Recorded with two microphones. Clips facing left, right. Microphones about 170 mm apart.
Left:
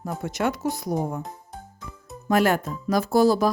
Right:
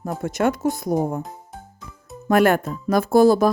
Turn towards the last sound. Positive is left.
turn(degrees=-50)  # may be behind; listen again after turning